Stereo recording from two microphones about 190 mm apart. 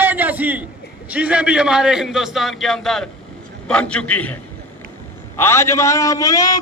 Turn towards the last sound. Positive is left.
turn(degrees=20)  # may be behind; listen again after turning